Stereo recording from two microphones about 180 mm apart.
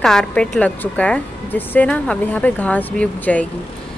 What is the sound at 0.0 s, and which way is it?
A woman's voice, 5° left (ahead or behind).